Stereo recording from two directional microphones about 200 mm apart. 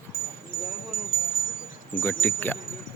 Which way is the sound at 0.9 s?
45° left (ahead or behind).